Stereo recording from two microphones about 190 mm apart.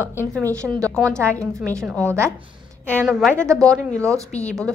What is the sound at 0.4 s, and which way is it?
Speech, 15° right (ahead or behind).